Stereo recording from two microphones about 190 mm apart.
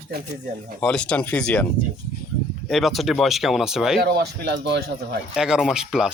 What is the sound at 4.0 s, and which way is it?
Speech, 60° right (ahead or behind).